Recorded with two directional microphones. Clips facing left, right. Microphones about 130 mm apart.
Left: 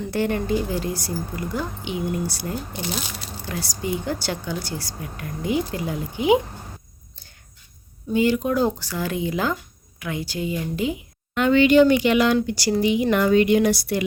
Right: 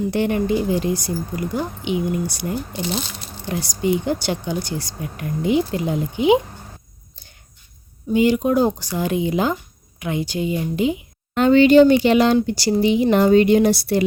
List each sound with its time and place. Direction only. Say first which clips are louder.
0.1 s a woman's voice: even; 20° right (ahead or behind)
8.1 s a woman's voice: right 4 dB; 15° right (ahead or behind)
11.3 s speech: right 4 dB; 35° right (ahead or behind)